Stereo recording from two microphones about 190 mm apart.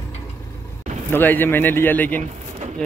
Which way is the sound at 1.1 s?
10° left (ahead or behind).